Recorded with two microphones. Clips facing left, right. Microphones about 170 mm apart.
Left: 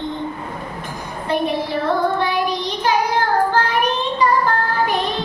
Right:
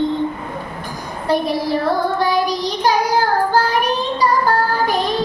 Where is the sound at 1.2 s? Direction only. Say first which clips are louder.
Right 2 dB; 35° right (ahead or behind).